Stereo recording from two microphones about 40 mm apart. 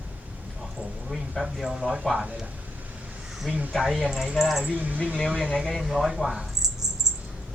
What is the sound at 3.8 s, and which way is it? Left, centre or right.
Speech, centre.